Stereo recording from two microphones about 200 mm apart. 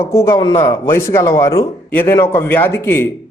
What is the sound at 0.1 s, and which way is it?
Speech, 15° left (ahead or behind).